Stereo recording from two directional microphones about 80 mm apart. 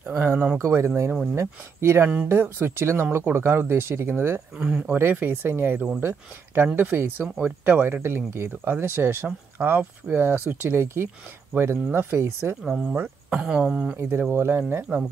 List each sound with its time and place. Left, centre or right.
0.2 s speech: right
4.6 s speech: centre
4.9 s speech: right
12.6 s speech: centre
13.3 s speech: centre
14.3 s speech: right